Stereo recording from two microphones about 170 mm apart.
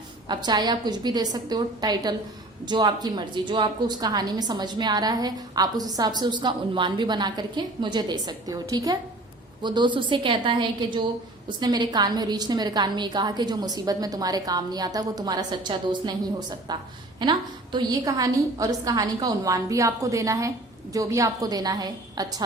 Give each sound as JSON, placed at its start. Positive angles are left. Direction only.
{"t": 0.3, "sound": "a woman's voice", "side_deg": -25}